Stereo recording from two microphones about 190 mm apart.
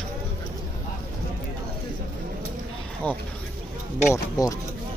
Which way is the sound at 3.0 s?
5° left (ahead or behind).